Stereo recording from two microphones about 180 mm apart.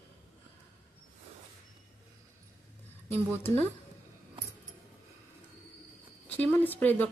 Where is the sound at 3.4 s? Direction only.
10° left (ahead or behind).